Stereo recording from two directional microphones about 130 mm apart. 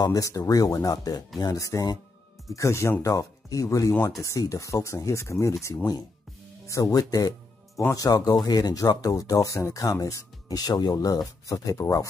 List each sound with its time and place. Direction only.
0.0 s speech: 25° left (ahead or behind)